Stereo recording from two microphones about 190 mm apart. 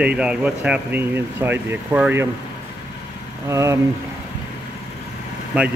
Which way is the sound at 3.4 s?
15° right (ahead or behind).